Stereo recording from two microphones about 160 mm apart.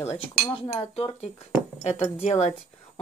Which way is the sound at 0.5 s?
35° left (ahead or behind).